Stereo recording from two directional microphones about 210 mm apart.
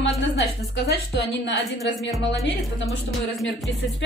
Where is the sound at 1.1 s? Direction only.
60° left (ahead or behind).